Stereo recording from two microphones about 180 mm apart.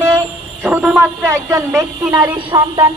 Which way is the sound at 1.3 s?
15° right (ahead or behind).